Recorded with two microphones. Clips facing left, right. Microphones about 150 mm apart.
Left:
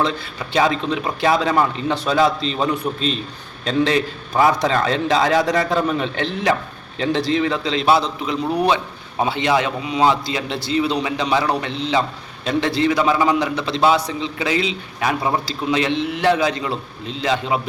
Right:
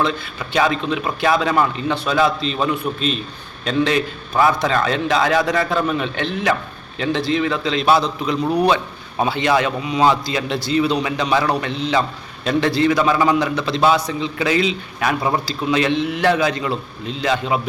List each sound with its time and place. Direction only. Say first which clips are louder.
0.0 s a man's voice: even; 30° left (ahead or behind)